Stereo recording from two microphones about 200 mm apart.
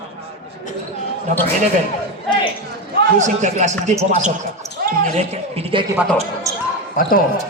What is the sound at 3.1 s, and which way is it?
A man's voice, 35° right (ahead or behind).